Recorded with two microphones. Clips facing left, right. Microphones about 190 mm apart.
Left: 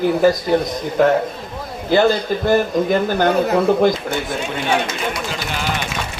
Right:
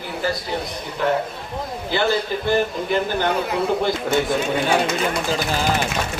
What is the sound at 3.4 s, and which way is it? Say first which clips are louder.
Speech: left 6 dB; 45° left (ahead or behind).